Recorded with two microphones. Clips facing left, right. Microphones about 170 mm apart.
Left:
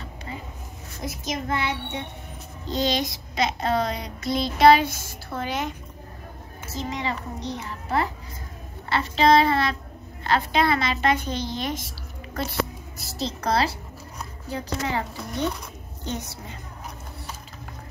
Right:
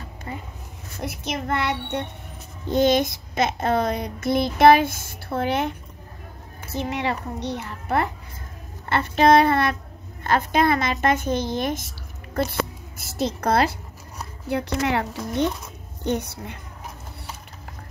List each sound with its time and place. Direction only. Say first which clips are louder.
1.0 s a child's voice: right 1 dB; 60° right (ahead or behind)
2.7 s child singing: right 6 dB; 55° right (ahead or behind)
6.7 s a child's voice: right 4 dB; 60° right (ahead or behind)
8.8 s child singing: right 2 dB; 55° right (ahead or behind)
13.0 s a child's voice: right 4 dB; 55° right (ahead or behind)
14.5 s a child's voice: right 5 dB; 70° right (ahead or behind)